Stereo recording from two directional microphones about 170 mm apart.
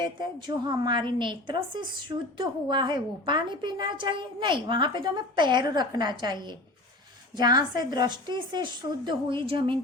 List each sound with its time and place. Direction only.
0.0 s a woman's voice: 25° right (ahead or behind)